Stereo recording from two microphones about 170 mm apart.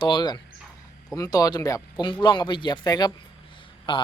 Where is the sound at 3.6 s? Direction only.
30° left (ahead or behind).